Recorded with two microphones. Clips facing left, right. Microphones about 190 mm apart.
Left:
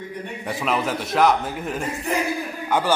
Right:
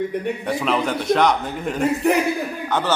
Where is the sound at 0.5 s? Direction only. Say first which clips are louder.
Right 1 dB; centre (ahead or behind).